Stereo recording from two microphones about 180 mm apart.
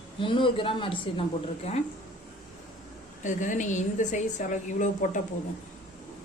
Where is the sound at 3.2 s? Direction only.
45° left (ahead or behind).